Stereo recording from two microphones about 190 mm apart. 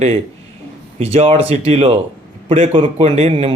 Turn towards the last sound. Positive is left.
turn(degrees=-30)  # may be behind; listen again after turning